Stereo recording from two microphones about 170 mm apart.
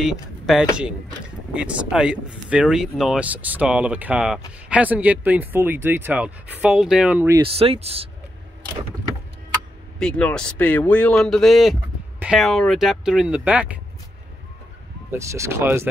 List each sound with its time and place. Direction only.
0.0 s speech: 5° right (ahead or behind)
7.4 s speech: 35° right (ahead or behind)
9.9 s a man's voice: 5° left (ahead or behind)
15.0 s speech: 15° right (ahead or behind)